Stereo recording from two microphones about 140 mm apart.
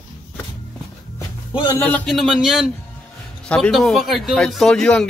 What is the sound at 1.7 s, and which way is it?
Speech, 10° left (ahead or behind).